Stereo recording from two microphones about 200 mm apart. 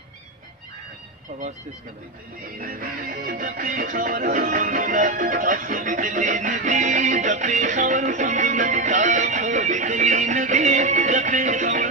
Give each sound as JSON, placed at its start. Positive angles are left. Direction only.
{"t": 2.4, "sound": "music", "side_deg": -45}